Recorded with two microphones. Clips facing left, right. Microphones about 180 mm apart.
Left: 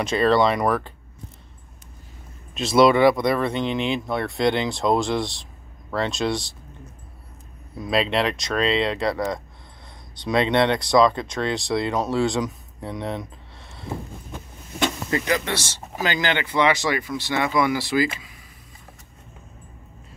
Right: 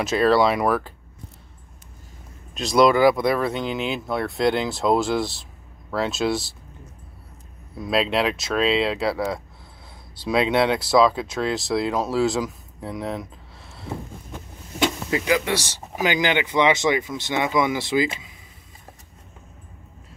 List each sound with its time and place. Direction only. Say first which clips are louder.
0.0 s speech: right 1 dB; 5° right (ahead or behind)
2.5 s speech: left 1 dB; centre (ahead or behind)
7.7 s speech: even; centre (ahead or behind); by 18.3 s 20° right (ahead or behind)